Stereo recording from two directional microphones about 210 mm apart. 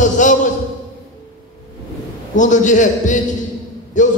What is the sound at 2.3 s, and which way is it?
A man's voice, 35° left (ahead or behind).